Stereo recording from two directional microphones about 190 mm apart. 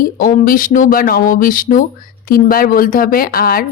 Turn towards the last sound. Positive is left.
turn(degrees=50)  # may be behind; listen again after turning